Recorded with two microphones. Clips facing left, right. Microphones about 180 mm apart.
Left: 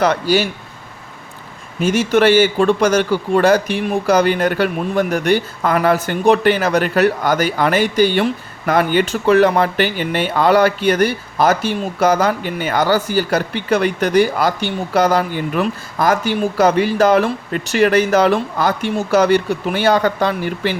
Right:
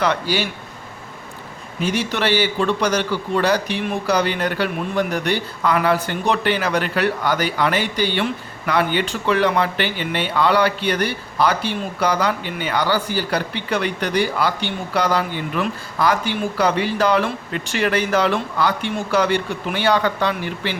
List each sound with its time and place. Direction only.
0.0 s a man's voice: 45° left (ahead or behind)
1.8 s a man's voice: 45° left (ahead or behind)